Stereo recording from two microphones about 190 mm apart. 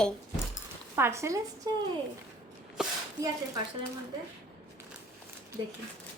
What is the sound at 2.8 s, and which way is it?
Speech, centre (ahead or behind).